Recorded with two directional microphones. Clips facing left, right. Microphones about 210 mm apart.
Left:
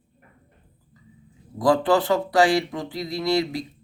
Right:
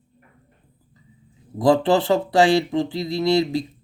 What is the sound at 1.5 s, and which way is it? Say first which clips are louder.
Speech: right 2 dB; 25° right (ahead or behind).